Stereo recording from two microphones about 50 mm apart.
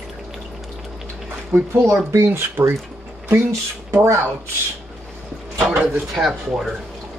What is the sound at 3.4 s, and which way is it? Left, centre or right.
Speech, right.